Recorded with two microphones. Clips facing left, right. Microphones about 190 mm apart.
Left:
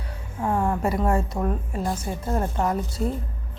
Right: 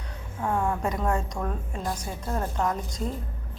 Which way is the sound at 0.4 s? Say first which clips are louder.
Left 3 dB; 5° left (ahead or behind).